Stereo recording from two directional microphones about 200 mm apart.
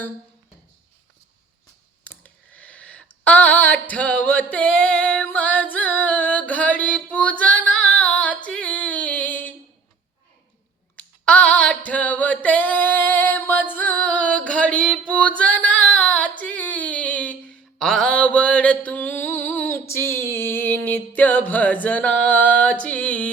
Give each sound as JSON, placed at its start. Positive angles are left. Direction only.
{"t": 2.0, "sound": "a sound", "side_deg": 5}
{"t": 7.6, "sound": "female singing", "side_deg": 5}
{"t": 10.9, "sound": "singing", "side_deg": 5}
{"t": 15.9, "sound": "female singing", "side_deg": 5}
{"t": 16.4, "sound": "a sound", "side_deg": 10}
{"t": 19.9, "sound": "music", "side_deg": 10}